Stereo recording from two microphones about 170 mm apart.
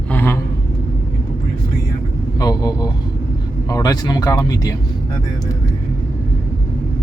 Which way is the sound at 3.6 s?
20° left (ahead or behind).